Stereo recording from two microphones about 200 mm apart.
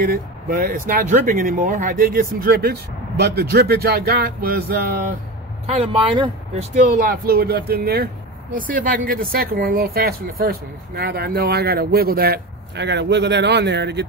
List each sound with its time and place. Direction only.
0.1 s speech: 45° right (ahead or behind)
5.7 s speech: 30° right (ahead or behind)
6.7 s speech: 45° right (ahead or behind)